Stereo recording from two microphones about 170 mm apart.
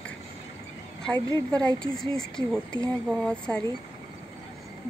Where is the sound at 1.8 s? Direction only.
5° left (ahead or behind).